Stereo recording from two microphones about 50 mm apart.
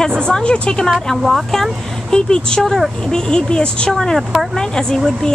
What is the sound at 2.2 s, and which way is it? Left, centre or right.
Speech, centre.